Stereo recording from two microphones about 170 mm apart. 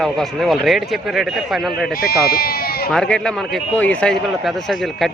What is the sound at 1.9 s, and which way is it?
Speech, 60° left (ahead or behind).